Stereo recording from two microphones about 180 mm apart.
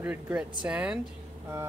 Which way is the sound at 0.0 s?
10° right (ahead or behind).